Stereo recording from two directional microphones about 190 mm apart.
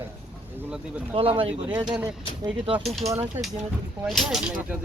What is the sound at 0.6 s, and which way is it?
Speech, 5° right (ahead or behind).